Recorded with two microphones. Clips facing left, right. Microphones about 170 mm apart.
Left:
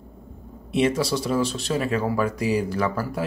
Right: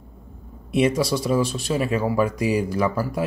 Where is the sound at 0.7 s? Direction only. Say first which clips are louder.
Right 2 dB; 15° right (ahead or behind).